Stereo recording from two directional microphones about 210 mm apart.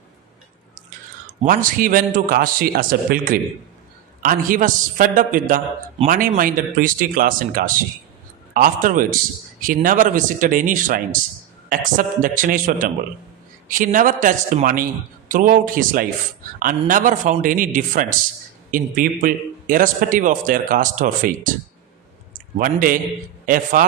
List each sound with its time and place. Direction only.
0.8 s a man's voice: 40° right (ahead or behind)